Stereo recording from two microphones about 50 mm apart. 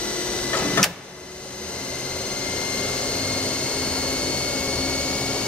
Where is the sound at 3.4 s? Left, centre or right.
Left.